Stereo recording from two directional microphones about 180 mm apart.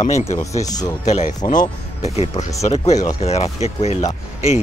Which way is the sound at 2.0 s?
40° left (ahead or behind).